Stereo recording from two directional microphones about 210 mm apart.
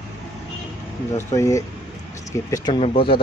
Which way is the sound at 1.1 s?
15° left (ahead or behind).